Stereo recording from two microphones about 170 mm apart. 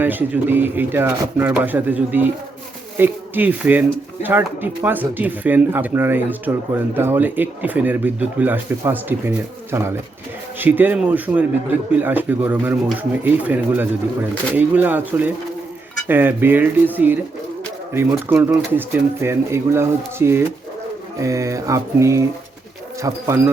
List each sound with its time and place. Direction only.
0.0 s speech: 10° right (ahead or behind)